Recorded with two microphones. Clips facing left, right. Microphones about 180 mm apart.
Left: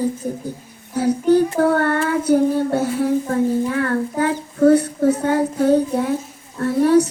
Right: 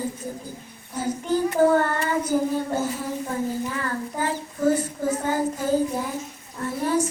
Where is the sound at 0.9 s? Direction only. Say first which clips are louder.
Left 9 dB; 70° left (ahead or behind).